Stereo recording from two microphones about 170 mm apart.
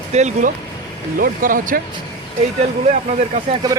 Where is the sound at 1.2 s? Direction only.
55° right (ahead or behind).